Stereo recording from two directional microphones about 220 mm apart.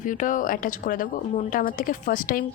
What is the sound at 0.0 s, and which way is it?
A woman's voice, 35° left (ahead or behind).